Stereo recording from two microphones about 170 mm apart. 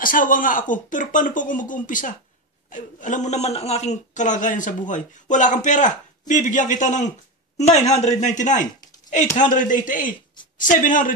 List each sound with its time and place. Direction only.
0.0 s a man's voice: 55° left (ahead or behind)